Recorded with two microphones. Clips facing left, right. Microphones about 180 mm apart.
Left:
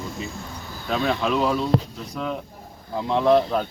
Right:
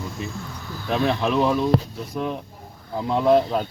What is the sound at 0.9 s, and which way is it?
Speech, 20° right (ahead or behind).